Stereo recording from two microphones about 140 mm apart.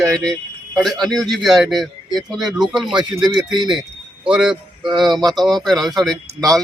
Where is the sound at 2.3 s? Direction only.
5° right (ahead or behind).